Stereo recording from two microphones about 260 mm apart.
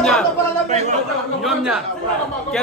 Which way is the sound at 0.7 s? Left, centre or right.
Right.